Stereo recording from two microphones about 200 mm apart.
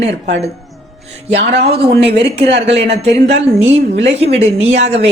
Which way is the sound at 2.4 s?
55° right (ahead or behind).